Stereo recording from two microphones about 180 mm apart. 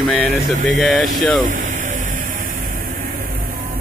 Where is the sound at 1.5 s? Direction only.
45° right (ahead or behind).